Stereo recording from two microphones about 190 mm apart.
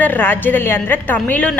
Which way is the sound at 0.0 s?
10° left (ahead or behind).